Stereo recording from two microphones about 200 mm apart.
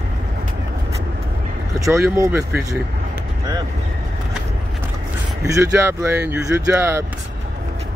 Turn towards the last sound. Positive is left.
turn(degrees=-15)  # may be behind; listen again after turning